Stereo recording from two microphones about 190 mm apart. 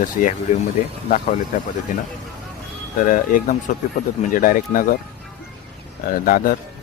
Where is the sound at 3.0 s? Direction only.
45° left (ahead or behind).